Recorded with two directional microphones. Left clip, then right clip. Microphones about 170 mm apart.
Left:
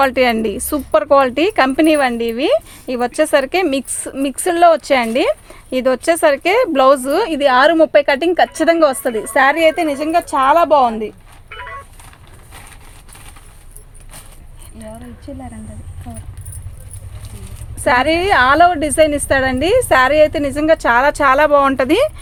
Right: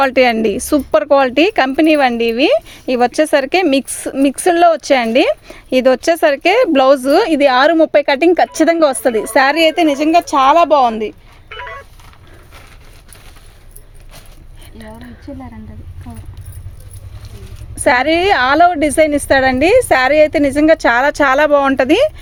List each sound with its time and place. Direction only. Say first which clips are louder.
0.0 s a woman's voice: right 2 dB; 40° right (ahead or behind); by 11.9 s 75° right (ahead or behind)
17.7 s speech: right 2 dB; 50° right (ahead or behind); by 22.1 s 30° right (ahead or behind)